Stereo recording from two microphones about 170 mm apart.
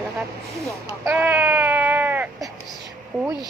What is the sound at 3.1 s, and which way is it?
Speech, 5° right (ahead or behind).